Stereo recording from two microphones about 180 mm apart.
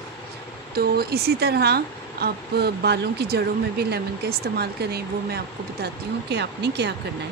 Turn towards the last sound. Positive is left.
turn(degrees=-70)  # may be behind; listen again after turning